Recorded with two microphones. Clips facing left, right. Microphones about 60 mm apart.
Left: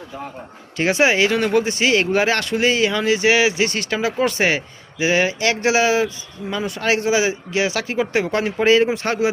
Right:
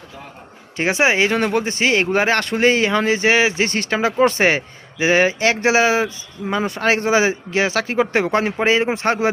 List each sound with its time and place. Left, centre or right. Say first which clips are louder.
0.8 s speech: even; right